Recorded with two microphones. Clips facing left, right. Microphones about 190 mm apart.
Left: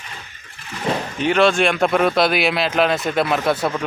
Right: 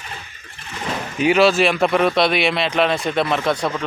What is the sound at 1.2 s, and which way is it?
Speech, 5° right (ahead or behind).